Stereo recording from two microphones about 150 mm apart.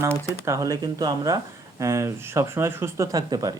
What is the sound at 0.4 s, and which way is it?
Speech, 20° right (ahead or behind).